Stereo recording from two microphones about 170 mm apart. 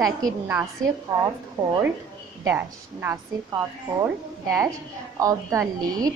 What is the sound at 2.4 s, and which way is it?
A woman's voice, 15° right (ahead or behind).